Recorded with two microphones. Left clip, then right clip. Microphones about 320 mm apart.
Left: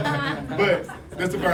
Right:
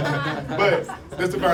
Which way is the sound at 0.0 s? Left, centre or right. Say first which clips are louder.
Even; left.